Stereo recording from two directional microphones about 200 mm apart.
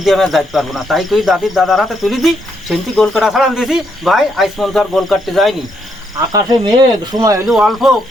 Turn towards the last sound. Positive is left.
turn(degrees=0)  # may be behind; listen again after turning